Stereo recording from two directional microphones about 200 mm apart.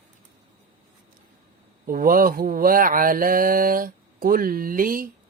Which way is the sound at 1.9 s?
45° right (ahead or behind).